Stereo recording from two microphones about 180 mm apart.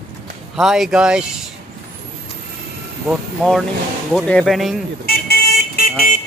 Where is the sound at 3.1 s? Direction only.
Centre (ahead or behind).